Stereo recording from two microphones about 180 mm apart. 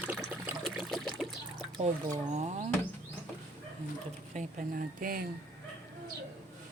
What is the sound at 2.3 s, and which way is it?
Speech, 40° right (ahead or behind).